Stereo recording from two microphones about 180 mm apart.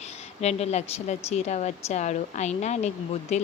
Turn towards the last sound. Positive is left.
turn(degrees=40)  # may be behind; listen again after turning